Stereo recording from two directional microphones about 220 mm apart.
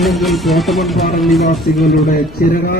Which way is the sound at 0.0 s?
Centre (ahead or behind).